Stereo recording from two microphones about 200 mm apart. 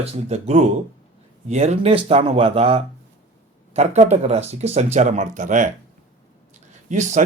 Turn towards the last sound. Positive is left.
turn(degrees=-35)  # may be behind; listen again after turning